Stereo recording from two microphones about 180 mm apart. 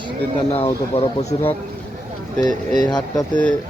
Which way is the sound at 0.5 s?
35° left (ahead or behind).